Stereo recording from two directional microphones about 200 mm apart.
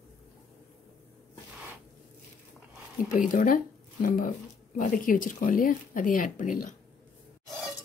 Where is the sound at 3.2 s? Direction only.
40° left (ahead or behind).